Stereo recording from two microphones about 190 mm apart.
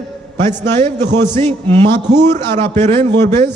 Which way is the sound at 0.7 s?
35° right (ahead or behind).